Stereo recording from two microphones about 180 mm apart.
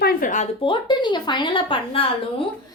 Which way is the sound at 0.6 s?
25° left (ahead or behind).